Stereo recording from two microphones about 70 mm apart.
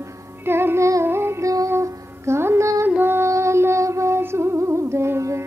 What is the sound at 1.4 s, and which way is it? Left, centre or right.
Music, right.